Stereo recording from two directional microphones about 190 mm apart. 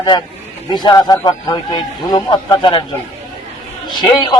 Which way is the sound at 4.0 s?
25° left (ahead or behind).